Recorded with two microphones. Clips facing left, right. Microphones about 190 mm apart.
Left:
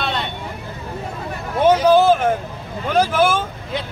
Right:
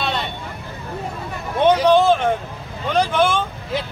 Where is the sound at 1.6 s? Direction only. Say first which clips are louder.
Left 1 dB; 5° left (ahead or behind).